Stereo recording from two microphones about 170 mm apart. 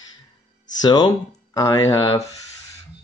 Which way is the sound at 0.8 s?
25° left (ahead or behind).